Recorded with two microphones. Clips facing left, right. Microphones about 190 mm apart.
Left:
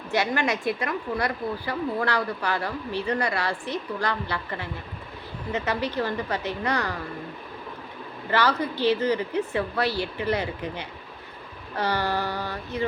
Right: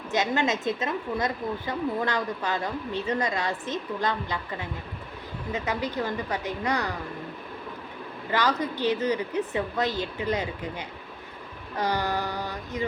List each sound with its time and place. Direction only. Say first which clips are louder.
0.1 s a woman's voice: even; 20° right (ahead or behind)
8.3 s speech: left 2 dB; 15° right (ahead or behind)